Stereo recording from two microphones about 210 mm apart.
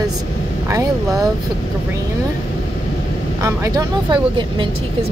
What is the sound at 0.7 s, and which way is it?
Speech, 15° right (ahead or behind).